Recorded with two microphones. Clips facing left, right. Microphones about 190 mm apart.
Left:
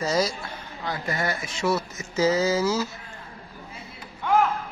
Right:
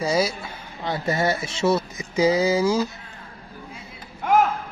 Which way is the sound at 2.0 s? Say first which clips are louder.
Right 3 dB; 15° right (ahead or behind).